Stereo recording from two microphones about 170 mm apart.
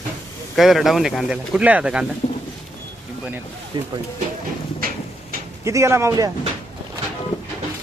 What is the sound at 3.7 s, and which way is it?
Speech, 30° right (ahead or behind).